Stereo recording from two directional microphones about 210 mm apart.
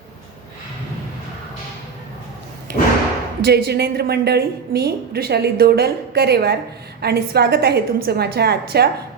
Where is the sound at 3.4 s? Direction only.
50° right (ahead or behind).